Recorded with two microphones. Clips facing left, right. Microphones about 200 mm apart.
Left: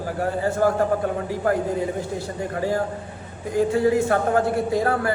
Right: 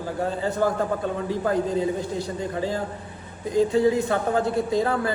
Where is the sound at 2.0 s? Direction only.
20° right (ahead or behind).